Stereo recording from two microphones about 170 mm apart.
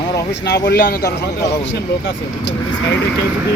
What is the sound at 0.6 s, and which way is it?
Speech, 60° left (ahead or behind).